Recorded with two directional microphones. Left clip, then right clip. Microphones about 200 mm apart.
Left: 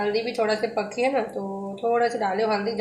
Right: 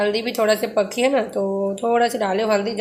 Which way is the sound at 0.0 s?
45° right (ahead or behind).